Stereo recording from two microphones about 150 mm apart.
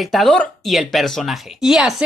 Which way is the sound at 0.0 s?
Centre (ahead or behind).